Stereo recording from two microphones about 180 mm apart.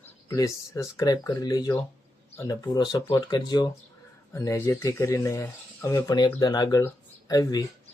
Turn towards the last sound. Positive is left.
turn(degrees=20)  # may be behind; listen again after turning